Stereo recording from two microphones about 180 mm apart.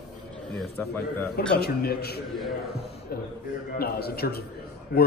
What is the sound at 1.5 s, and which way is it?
Speech, 60° left (ahead or behind).